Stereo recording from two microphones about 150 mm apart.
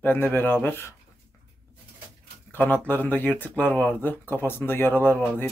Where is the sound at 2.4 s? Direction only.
10° left (ahead or behind).